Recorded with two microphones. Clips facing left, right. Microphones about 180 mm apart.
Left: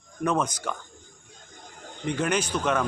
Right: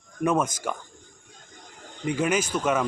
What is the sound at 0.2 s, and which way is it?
Speech, 5° right (ahead or behind).